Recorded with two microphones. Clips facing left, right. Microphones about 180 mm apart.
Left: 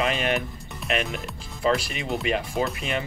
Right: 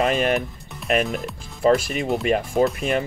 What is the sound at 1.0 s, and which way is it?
Speech, centre (ahead or behind).